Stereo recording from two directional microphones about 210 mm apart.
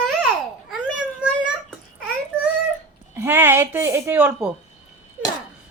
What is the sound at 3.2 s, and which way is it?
A woman's voice, 10° right (ahead or behind).